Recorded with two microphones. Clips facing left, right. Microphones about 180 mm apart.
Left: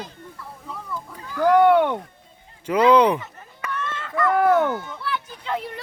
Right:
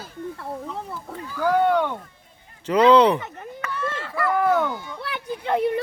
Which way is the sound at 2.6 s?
10° left (ahead or behind).